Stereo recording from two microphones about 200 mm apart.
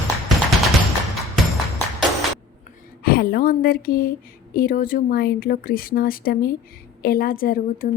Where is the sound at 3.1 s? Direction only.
50° left (ahead or behind).